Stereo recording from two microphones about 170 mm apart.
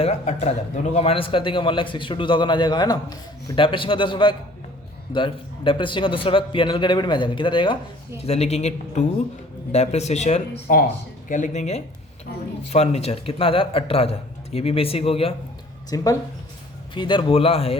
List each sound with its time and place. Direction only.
0.0 s a man's voice: 40° left (ahead or behind)
15.9 s a man's voice: 20° left (ahead or behind)